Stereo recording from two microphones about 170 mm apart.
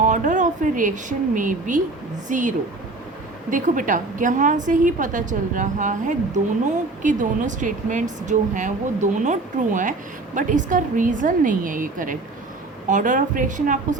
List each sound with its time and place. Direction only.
0.0 s a woman's voice: 45° right (ahead or behind)